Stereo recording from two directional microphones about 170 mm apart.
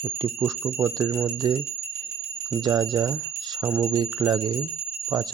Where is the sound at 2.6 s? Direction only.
20° right (ahead or behind).